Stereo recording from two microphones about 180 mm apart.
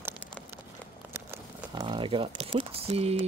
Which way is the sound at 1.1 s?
15° right (ahead or behind).